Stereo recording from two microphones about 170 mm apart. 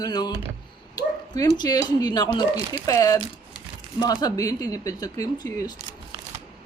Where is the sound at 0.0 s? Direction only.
25° left (ahead or behind).